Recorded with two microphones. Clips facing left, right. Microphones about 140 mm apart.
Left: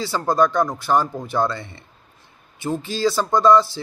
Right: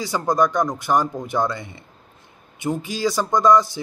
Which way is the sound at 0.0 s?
15° right (ahead or behind).